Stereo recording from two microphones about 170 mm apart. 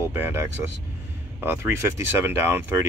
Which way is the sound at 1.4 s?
15° right (ahead or behind).